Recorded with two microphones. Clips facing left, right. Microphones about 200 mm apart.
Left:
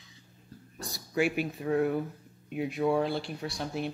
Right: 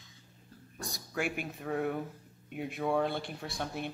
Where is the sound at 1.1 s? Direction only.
50° right (ahead or behind).